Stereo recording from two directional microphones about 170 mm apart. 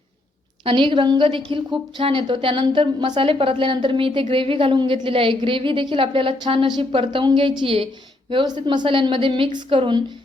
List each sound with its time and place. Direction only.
0.6 s a woman's voice: 30° right (ahead or behind)